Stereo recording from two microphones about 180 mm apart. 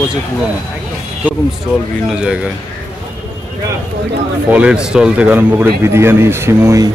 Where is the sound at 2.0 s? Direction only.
5° right (ahead or behind).